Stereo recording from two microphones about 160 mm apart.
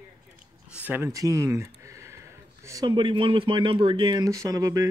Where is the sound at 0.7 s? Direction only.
10° right (ahead or behind).